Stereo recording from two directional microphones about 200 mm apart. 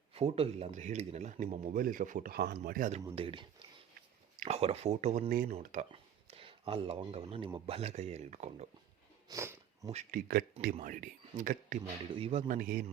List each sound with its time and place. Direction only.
0.1 s speech: 30° right (ahead or behind)
3.2 s speech: 25° right (ahead or behind); by 5.8 s 40° right (ahead or behind)
5.9 s speech: 25° right (ahead or behind)
9.3 s cat: 15° right (ahead or behind)
9.9 s speech: 35° right (ahead or behind)